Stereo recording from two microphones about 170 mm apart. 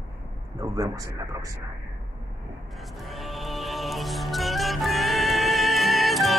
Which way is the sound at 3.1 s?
Centre (ahead or behind).